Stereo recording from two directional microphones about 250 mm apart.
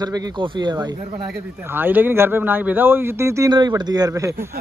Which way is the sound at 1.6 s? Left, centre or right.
Centre.